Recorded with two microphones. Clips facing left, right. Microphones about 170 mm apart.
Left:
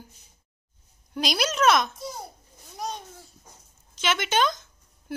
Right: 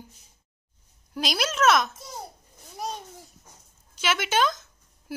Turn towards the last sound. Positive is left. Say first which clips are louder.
# even
turn(degrees=-5)  # may be behind; listen again after turning